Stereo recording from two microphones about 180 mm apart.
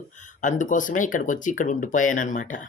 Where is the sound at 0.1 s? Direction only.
45° left (ahead or behind).